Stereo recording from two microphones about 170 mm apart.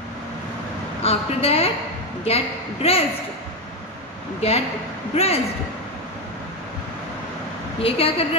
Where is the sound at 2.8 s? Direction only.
35° left (ahead or behind).